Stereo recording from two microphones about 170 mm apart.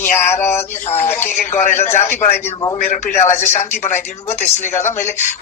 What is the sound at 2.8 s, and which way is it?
A man's voice, 40° left (ahead or behind).